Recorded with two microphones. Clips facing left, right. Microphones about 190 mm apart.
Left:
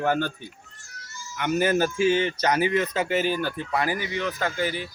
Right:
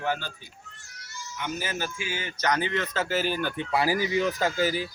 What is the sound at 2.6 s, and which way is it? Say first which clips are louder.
Speech: left 5 dB; 15° left (ahead or behind).